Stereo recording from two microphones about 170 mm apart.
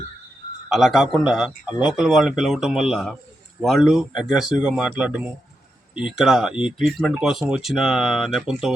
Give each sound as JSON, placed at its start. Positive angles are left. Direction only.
{"t": 0.7, "sound": "speech", "side_deg": 0}